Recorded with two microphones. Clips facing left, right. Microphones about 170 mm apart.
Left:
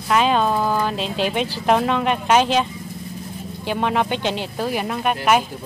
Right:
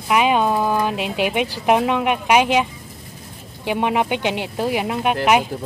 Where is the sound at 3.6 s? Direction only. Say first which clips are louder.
Right 1 dB; 15° right (ahead or behind).